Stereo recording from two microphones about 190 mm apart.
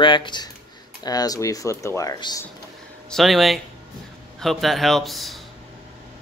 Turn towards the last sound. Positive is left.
turn(degrees=0)  # may be behind; listen again after turning